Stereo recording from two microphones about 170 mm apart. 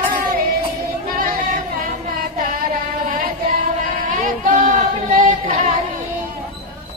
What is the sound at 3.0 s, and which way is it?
Singing, 55° right (ahead or behind).